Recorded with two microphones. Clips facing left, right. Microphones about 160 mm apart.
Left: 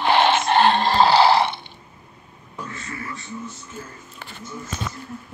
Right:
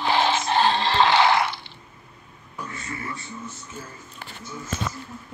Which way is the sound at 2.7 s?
25° right (ahead or behind).